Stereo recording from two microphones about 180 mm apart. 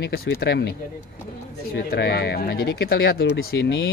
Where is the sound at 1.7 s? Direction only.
60° left (ahead or behind).